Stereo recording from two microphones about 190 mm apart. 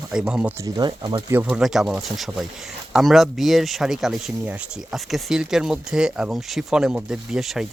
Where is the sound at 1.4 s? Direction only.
5° right (ahead or behind).